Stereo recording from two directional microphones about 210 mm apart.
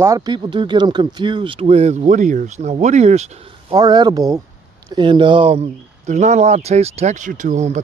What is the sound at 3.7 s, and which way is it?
Speech, 20° right (ahead or behind).